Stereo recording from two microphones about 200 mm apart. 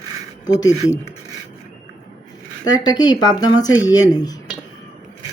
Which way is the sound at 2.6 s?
20° left (ahead or behind).